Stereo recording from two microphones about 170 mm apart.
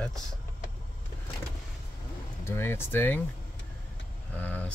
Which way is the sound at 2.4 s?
15° left (ahead or behind).